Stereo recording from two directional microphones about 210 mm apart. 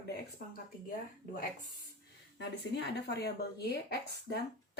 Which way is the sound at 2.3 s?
55° left (ahead or behind).